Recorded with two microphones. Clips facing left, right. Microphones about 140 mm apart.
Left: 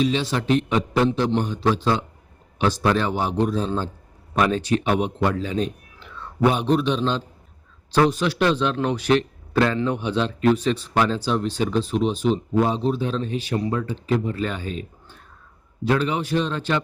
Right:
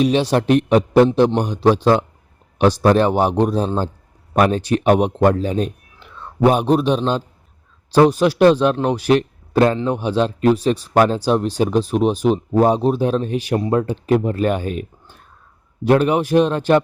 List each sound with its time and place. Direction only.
0.0 s speech: 60° right (ahead or behind); by 1.8 s 40° right (ahead or behind)
1.8 s a man's voice: 55° right (ahead or behind)
2.6 s a man's voice: 40° right (ahead or behind)
3.0 s a man's voice: 50° right (ahead or behind)
12.1 s speech: 10° right (ahead or behind)
12.5 s speech: 45° right (ahead or behind)
15.9 s speech: 55° right (ahead or behind)